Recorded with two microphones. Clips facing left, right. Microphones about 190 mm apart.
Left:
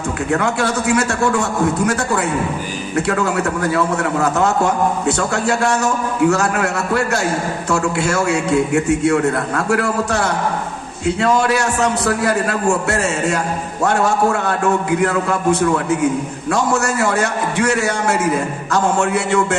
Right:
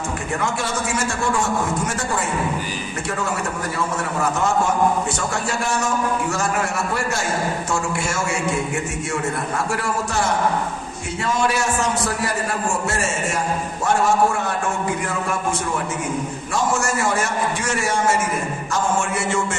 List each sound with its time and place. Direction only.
0.3 s a man's voice: 65° left (ahead or behind)
3.1 s a man's voice: 70° left (ahead or behind)
16.5 s a man's voice: 65° left (ahead or behind)